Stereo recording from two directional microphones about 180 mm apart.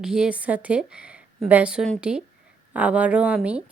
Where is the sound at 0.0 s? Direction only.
5° right (ahead or behind).